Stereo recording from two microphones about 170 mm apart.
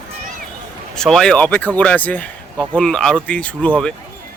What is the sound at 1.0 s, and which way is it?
Speech, 5° left (ahead or behind).